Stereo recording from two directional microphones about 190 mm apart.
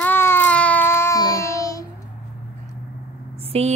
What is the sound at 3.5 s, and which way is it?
Speech, 35° right (ahead or behind).